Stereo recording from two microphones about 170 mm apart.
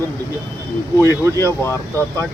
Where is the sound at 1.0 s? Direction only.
15° left (ahead or behind).